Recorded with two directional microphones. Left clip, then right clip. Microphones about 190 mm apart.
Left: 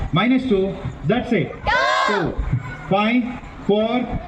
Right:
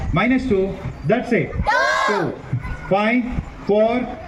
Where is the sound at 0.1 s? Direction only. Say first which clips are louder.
Even; 50° left (ahead or behind).